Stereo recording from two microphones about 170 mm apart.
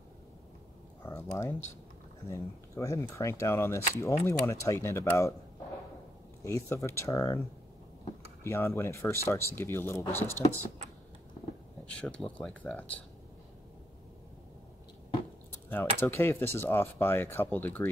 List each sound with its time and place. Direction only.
1.0 s speech: 15° left (ahead or behind)
6.4 s speech: 15° left (ahead or behind)
8.5 s speech: 15° left (ahead or behind)
11.8 s speech: 5° left (ahead or behind)
15.7 s speech: 15° left (ahead or behind)